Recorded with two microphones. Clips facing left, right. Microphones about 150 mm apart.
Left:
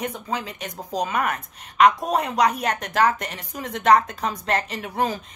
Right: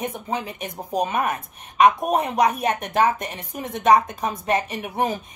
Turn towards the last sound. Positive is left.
turn(degrees=-20)  # may be behind; listen again after turning